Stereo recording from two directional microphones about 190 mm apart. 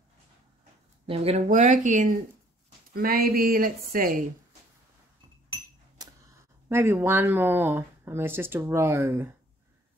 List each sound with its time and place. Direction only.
1.0 s speech: 30° right (ahead or behind)
2.9 s speech: 50° right (ahead or behind)
6.7 s speech: 10° right (ahead or behind)